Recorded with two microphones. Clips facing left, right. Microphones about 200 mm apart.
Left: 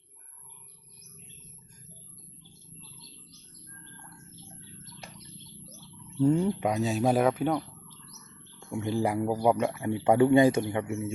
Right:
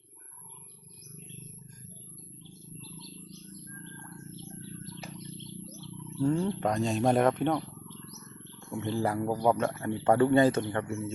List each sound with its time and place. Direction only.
4.6 s bird: 35° right (ahead or behind)
6.2 s speech: 15° left (ahead or behind)